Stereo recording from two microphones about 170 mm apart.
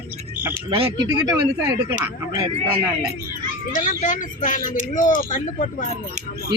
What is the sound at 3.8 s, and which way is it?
Speech, 45° left (ahead or behind).